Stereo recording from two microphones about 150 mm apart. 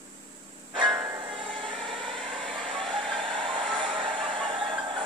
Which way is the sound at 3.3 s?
35° right (ahead or behind).